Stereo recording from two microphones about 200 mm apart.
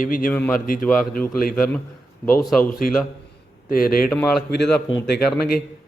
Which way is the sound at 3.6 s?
45° left (ahead or behind).